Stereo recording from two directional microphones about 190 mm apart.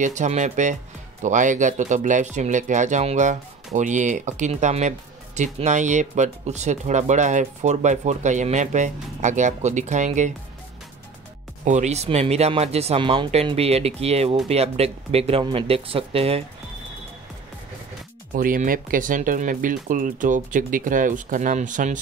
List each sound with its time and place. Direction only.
0.0 s speech: 40° right (ahead or behind)
11.6 s speech: 40° right (ahead or behind)
18.3 s speech: 45° right (ahead or behind)